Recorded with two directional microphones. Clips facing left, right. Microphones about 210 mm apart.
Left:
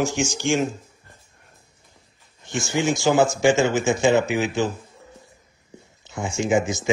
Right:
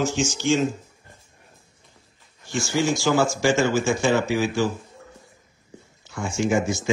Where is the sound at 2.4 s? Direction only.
20° left (ahead or behind).